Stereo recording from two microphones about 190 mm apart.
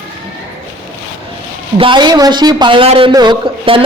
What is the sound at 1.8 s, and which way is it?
A woman's voice, 25° right (ahead or behind).